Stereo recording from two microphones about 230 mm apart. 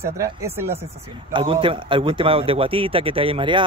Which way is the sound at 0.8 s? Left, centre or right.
Right.